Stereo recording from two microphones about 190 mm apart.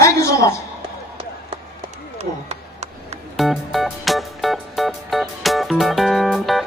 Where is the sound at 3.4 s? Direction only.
Centre (ahead or behind).